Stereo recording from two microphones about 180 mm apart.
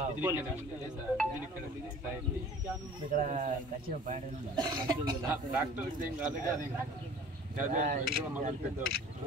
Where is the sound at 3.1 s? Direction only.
45° right (ahead or behind).